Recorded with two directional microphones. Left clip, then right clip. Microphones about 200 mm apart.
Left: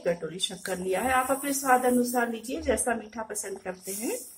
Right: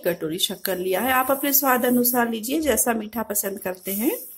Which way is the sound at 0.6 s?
55° right (ahead or behind).